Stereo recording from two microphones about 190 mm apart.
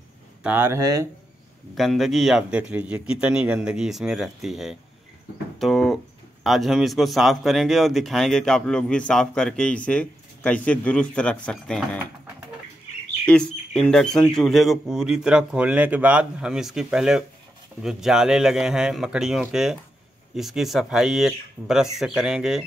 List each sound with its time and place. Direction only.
0.4 s speech: 10° right (ahead or behind)
1.8 s speech: centre (ahead or behind)
13.3 s speech: 5° left (ahead or behind)